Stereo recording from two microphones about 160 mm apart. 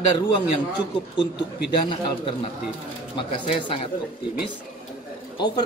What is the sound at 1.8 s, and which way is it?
Speech, 30° left (ahead or behind).